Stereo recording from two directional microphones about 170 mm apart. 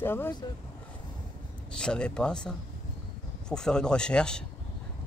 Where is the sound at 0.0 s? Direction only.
10° left (ahead or behind).